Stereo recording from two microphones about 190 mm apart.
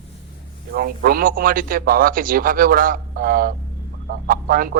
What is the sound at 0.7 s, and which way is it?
A man's voice, 50° right (ahead or behind).